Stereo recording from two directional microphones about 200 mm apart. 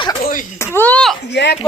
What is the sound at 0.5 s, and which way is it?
Speech, 10° left (ahead or behind).